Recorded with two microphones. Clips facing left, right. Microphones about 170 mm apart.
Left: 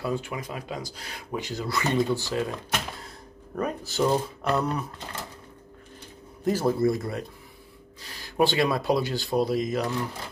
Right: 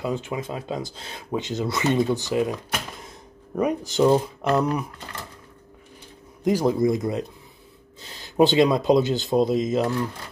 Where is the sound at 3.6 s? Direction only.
15° right (ahead or behind).